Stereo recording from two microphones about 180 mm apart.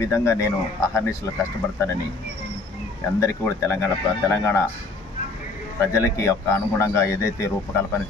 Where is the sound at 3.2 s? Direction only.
15° left (ahead or behind).